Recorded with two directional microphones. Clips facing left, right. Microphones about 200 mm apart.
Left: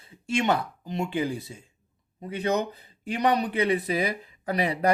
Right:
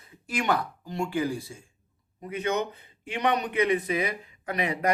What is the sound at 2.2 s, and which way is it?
A man's voice, 30° left (ahead or behind).